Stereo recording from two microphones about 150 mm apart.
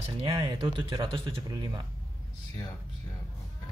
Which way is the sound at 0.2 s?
40° right (ahead or behind).